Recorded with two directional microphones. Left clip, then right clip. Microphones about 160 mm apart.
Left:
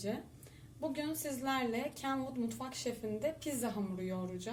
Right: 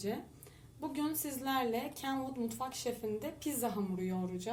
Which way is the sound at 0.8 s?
40° right (ahead or behind).